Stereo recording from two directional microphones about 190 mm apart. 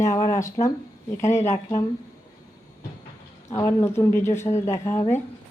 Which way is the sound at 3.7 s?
15° left (ahead or behind).